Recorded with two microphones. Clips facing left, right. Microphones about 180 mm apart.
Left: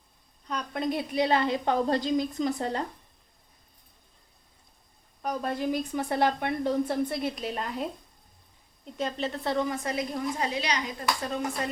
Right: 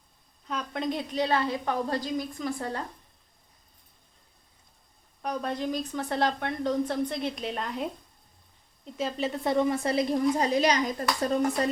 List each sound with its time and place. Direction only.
0.4 s a woman's voice: centre (ahead or behind); by 2.8 s 20° left (ahead or behind)
5.2 s a woman's voice: 5° left (ahead or behind); by 11.3 s 45° right (ahead or behind)